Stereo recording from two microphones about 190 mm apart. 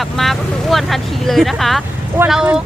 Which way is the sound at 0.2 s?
Centre (ahead or behind).